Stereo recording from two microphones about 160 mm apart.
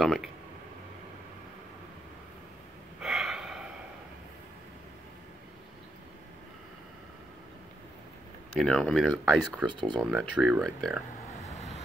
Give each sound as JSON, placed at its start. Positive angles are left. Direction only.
{"t": 0.0, "sound": "speech", "side_deg": 0}
{"t": 3.0, "sound": "gasp", "side_deg": 0}
{"t": 8.5, "sound": "speech", "side_deg": 0}
{"t": 9.7, "sound": "speech", "side_deg": -30}
{"t": 9.9, "sound": "speech", "side_deg": -5}
{"t": 11.4, "sound": "vehicle", "side_deg": 45}